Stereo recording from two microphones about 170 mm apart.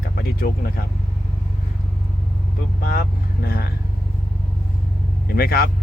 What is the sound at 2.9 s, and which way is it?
Speech, 60° left (ahead or behind).